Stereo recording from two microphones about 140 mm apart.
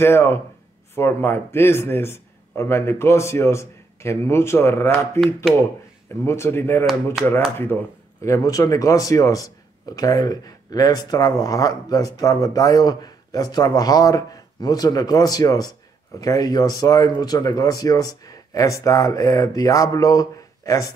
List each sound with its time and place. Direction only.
0.0 s speech: 15° left (ahead or behind)
6.2 s speech: 20° left (ahead or behind)